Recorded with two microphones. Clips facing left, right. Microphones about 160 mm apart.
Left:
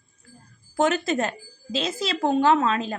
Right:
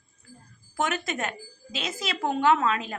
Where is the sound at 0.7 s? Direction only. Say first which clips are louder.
Left 7 dB; 30° left (ahead or behind).